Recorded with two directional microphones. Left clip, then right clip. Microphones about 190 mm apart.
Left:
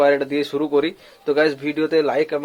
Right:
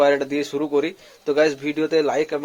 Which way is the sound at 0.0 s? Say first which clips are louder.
Left 1 dB; centre (ahead or behind).